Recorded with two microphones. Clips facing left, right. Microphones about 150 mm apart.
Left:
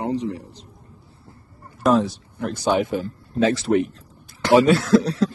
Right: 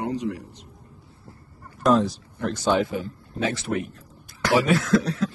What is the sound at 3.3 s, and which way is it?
A man's voice, 35° left (ahead or behind).